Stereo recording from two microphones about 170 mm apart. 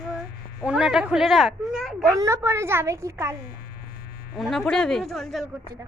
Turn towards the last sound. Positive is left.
turn(degrees=0)  # may be behind; listen again after turning